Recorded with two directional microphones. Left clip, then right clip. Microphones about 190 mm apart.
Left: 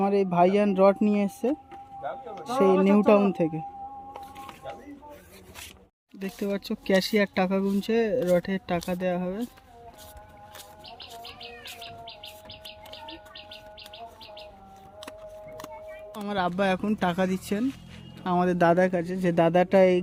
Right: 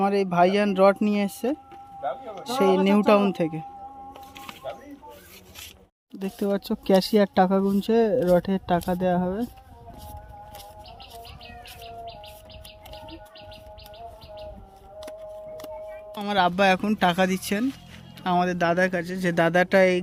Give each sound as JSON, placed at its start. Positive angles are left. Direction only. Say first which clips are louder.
{"t": 0.0, "sound": "speech", "louder": "right 1 dB", "side_deg": 5}
{"t": 6.1, "sound": "speech", "louder": "right 4 dB", "side_deg": -15}
{"t": 16.2, "sound": "speech", "louder": "right 6 dB", "side_deg": -10}
{"t": 18.3, "sound": "speech", "louder": "left 1 dB", "side_deg": 25}